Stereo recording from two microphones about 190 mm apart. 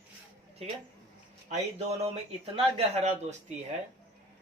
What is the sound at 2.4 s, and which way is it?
Speech, 35° right (ahead or behind).